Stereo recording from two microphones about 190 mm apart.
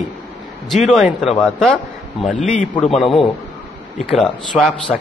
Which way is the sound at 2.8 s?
Centre (ahead or behind).